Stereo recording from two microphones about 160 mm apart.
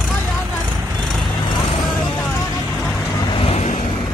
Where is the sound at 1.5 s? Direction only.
30° left (ahead or behind).